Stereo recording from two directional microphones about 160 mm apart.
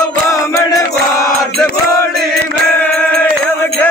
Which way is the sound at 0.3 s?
20° left (ahead or behind).